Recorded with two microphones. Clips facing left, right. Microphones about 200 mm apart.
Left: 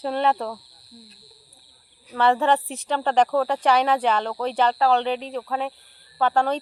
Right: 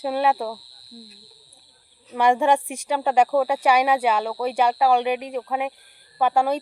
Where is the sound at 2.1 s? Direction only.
15° right (ahead or behind).